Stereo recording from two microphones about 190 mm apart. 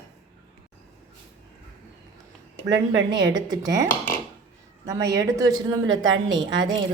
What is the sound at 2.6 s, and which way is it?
Speech, 70° right (ahead or behind).